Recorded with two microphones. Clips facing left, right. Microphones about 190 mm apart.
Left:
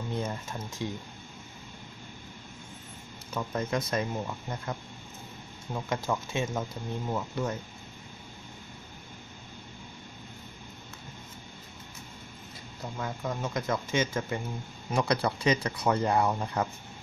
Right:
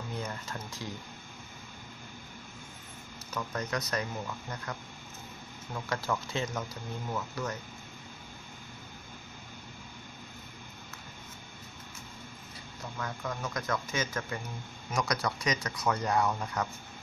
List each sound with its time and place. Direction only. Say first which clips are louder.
0.1 s a sound: left 5 dB; 20° left (ahead or behind)
3.3 s speech: left 4 dB; 25° left (ahead or behind)
12.9 s speech: left 3 dB; 25° left (ahead or behind)